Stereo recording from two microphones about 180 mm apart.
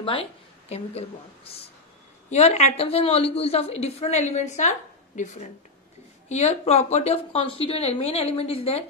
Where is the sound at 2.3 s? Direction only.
40° left (ahead or behind).